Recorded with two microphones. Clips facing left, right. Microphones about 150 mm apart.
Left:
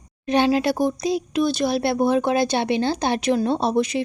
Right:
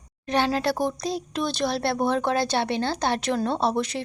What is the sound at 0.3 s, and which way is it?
Speech, 15° left (ahead or behind).